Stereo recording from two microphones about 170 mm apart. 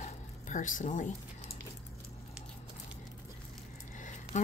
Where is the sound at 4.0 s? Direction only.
50° left (ahead or behind).